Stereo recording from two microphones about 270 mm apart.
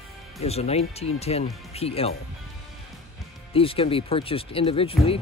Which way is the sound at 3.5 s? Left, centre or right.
Left.